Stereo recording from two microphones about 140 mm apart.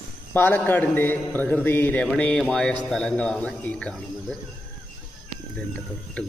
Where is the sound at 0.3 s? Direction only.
15° left (ahead or behind).